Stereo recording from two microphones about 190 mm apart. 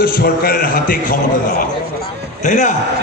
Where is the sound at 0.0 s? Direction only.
50° left (ahead or behind).